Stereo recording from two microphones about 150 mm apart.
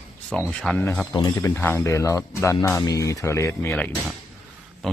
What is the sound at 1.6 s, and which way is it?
Speech, 15° left (ahead or behind).